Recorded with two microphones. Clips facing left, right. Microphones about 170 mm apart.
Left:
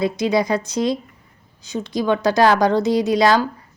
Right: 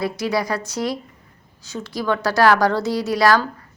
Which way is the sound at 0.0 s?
20° left (ahead or behind).